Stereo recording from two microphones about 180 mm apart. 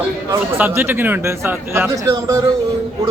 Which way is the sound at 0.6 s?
10° right (ahead or behind).